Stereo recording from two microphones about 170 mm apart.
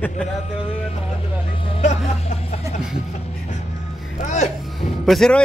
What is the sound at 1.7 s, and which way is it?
Hubbub, 35° left (ahead or behind).